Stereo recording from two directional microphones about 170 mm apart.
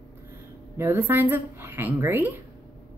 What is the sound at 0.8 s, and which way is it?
A woman's voice, 10° right (ahead or behind).